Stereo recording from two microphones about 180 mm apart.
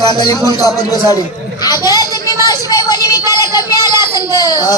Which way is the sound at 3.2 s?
20° left (ahead or behind).